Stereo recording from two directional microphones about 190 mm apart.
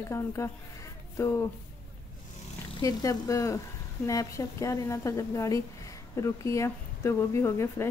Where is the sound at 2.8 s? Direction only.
15° left (ahead or behind).